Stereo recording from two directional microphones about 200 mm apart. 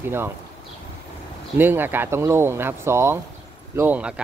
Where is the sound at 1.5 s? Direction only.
10° right (ahead or behind).